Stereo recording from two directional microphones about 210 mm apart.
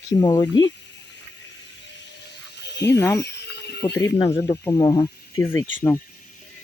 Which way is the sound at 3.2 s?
50° left (ahead or behind).